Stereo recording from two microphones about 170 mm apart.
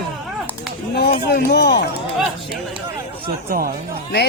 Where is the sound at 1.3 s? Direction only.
75° left (ahead or behind).